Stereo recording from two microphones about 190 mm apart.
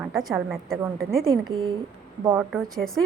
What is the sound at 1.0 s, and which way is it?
Speech, 50° right (ahead or behind).